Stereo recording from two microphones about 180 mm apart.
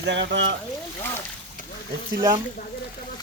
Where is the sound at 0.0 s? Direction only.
75° right (ahead or behind).